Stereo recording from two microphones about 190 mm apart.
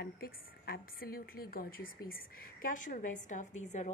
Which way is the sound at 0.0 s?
55° left (ahead or behind).